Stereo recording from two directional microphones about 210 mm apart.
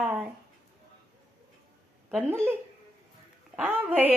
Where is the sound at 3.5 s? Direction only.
10° right (ahead or behind).